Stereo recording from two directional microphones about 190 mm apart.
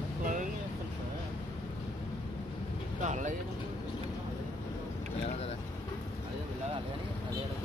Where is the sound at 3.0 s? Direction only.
40° right (ahead or behind).